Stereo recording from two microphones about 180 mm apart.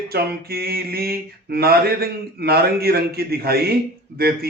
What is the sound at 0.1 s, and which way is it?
Mantra, 60° right (ahead or behind).